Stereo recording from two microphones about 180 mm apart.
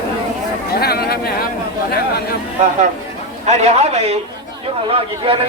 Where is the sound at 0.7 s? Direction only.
60° left (ahead or behind).